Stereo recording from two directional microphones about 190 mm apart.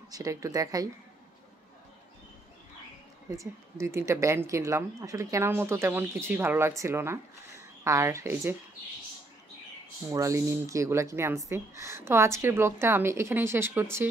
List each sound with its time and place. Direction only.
0.1 s speech: 15° right (ahead or behind)
3.3 s speech: 15° right (ahead or behind)
10.1 s speech: 15° right (ahead or behind)